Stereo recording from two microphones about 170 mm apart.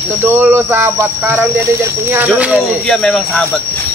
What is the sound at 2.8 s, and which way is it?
Speech, 5° left (ahead or behind).